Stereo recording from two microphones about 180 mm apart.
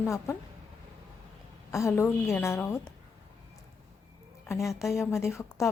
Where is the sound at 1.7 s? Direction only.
15° left (ahead or behind).